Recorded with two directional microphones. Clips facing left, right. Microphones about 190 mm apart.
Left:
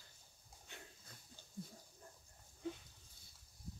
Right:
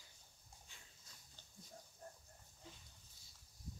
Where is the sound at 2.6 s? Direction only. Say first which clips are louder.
Left 16 dB; 60° left (ahead or behind).